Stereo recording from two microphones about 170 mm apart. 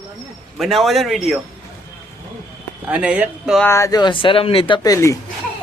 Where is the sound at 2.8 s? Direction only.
10° right (ahead or behind).